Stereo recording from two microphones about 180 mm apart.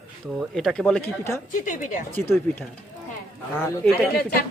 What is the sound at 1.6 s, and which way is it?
Speech, 45° left (ahead or behind).